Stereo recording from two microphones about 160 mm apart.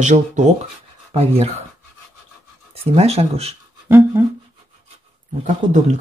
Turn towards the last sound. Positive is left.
turn(degrees=-50)  # may be behind; listen again after turning